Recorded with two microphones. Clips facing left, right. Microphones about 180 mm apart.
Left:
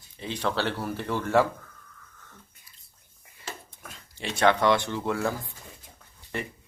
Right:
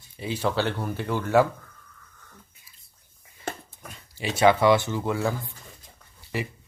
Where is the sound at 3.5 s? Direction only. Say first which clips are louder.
Right 7 dB; 55° right (ahead or behind).